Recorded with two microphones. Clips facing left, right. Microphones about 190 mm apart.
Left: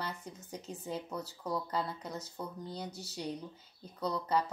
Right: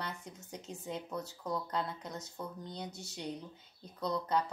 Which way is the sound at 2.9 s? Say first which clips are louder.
Left 2 dB; 35° left (ahead or behind).